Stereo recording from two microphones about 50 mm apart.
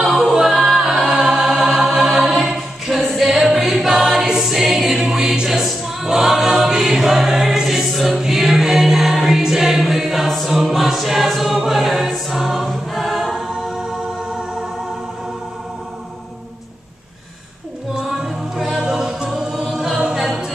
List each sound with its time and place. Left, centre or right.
0.0 s a capella: centre
1.3 s choir: centre
2.0 s a capella: centre
5.7 s choir: centre
17.9 s music: centre
20.2 s a capella: centre